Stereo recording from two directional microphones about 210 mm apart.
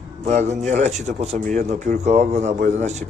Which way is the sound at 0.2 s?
30° right (ahead or behind).